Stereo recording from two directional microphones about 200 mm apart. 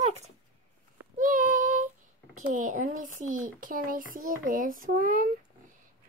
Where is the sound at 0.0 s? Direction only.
35° right (ahead or behind).